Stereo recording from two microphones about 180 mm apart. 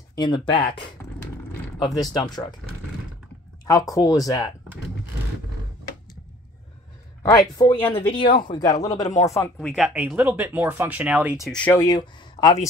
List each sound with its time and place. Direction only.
0.1 s speech: 25° left (ahead or behind)
3.9 s speech: 20° left (ahead or behind)
7.2 s speech: 20° left (ahead or behind)
9.8 s speech: 5° right (ahead or behind)
11.8 s speech: 25° left (ahead or behind)